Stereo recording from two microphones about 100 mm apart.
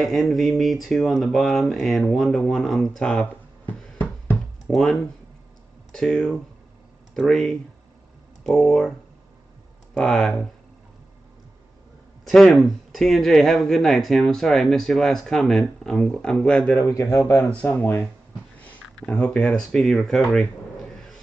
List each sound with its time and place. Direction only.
0.0 s speech: centre (ahead or behind)
3.6 s a sound: 15° left (ahead or behind)
4.6 s speech: centre (ahead or behind)
9.9 s speech: 5° left (ahead or behind)
12.3 s speech: centre (ahead or behind)
16.8 s speech: 35° left (ahead or behind)
17.7 s speech: 20° left (ahead or behind)
18.6 s a sound: 15° left (ahead or behind)
19.4 s speech: centre (ahead or behind)